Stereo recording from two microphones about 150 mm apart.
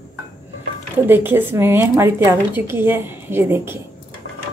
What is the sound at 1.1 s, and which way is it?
A woman's voice, 15° right (ahead or behind).